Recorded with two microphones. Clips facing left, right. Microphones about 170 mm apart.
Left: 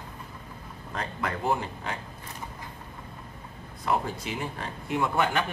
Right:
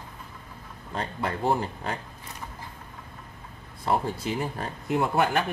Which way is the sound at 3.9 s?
30° right (ahead or behind).